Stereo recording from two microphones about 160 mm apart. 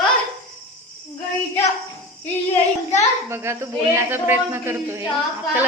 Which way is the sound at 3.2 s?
15° right (ahead or behind).